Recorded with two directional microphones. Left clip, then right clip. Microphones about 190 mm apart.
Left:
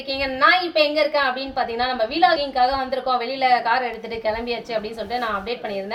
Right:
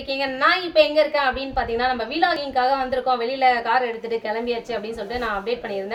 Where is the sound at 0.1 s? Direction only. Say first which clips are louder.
Left 2 dB; 15° right (ahead or behind).